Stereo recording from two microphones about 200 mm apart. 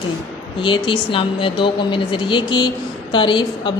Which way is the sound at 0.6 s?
25° left (ahead or behind).